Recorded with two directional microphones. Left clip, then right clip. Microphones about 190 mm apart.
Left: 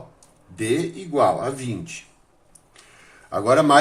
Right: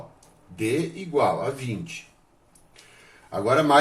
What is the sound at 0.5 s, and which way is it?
Speech, 50° left (ahead or behind).